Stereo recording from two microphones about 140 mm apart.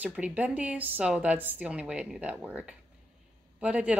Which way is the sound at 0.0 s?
10° right (ahead or behind).